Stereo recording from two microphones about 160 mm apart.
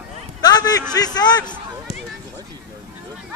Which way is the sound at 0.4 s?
25° left (ahead or behind).